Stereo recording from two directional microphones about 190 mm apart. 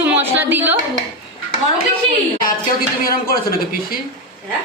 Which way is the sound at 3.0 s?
50° left (ahead or behind).